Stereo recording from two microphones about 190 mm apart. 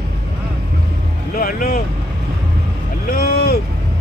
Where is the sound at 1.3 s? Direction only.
50° left (ahead or behind).